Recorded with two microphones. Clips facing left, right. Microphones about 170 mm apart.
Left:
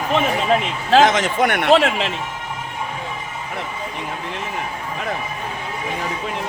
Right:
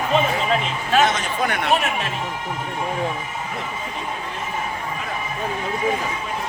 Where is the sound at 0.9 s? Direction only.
90° left.